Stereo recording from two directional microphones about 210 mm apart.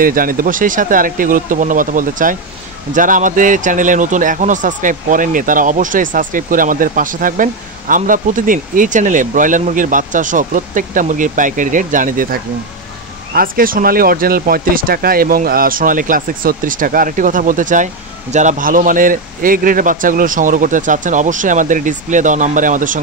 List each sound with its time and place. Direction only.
0.0 s a man's voice: 40° right (ahead or behind)